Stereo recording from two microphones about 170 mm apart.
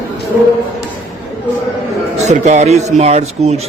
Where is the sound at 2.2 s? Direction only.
45° right (ahead or behind).